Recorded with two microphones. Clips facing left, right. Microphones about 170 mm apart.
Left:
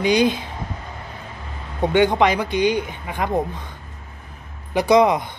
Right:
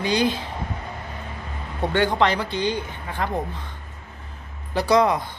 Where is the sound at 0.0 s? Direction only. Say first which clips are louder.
Left 4 dB; 15° left (ahead or behind).